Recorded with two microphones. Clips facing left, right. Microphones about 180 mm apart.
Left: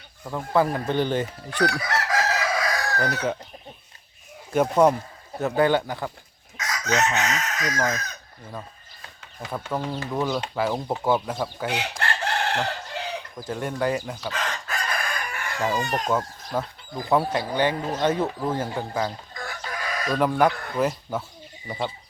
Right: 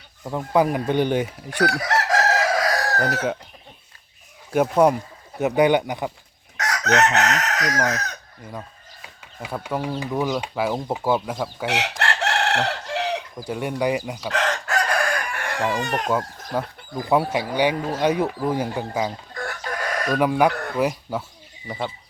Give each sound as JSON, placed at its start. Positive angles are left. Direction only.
{"t": 0.3, "sound": "speech", "side_deg": -15}
{"t": 1.7, "sound": "chicken", "side_deg": -45}
{"t": 4.5, "sound": "speech", "side_deg": -5}
{"t": 6.6, "sound": "chicken", "side_deg": -70}
{"t": 8.5, "sound": "speech", "side_deg": -10}
{"t": 11.6, "sound": "chicken", "side_deg": -80}
{"t": 13.4, "sound": "speech", "side_deg": -15}
{"t": 14.3, "sound": "chicken", "side_deg": -75}
{"t": 16.0, "sound": "speech", "side_deg": -10}
{"t": 19.4, "sound": "chicken", "side_deg": -65}
{"t": 20.1, "sound": "speech", "side_deg": -10}
{"t": 21.7, "sound": "speech", "side_deg": 0}